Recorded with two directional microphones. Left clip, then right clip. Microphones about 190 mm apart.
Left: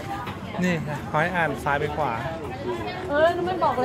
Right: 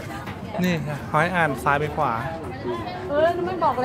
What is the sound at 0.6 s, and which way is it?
Speech, 15° right (ahead or behind).